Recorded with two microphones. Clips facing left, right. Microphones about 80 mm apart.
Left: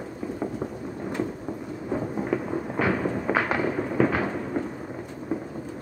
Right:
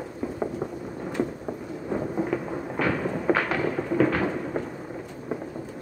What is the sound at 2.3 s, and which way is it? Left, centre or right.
Fireworks, centre.